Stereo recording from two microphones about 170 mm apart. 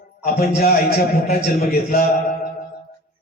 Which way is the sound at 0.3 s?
50° left (ahead or behind).